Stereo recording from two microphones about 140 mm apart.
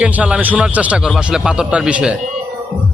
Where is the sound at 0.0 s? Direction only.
10° right (ahead or behind).